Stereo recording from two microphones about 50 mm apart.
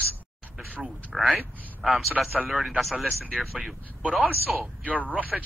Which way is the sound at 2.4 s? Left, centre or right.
Centre.